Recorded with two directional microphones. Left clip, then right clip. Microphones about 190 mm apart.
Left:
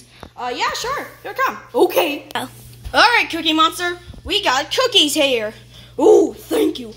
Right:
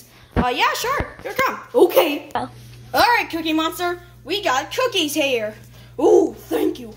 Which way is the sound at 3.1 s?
25° left (ahead or behind).